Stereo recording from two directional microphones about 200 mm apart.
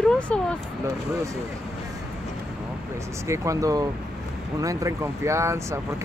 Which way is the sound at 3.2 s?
15° right (ahead or behind).